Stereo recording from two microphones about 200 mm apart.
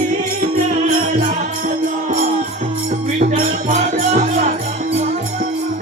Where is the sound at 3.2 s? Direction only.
35° right (ahead or behind).